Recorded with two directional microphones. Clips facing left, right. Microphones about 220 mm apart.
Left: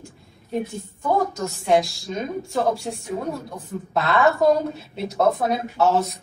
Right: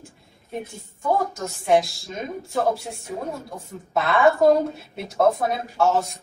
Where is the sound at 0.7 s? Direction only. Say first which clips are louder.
Even; centre (ahead or behind).